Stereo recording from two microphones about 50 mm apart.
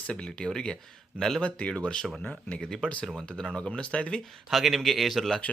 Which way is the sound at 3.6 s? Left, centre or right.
Left.